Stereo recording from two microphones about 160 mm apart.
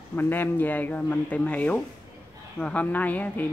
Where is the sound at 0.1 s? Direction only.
10° left (ahead or behind).